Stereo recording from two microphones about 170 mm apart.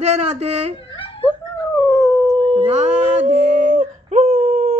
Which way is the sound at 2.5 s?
40° right (ahead or behind).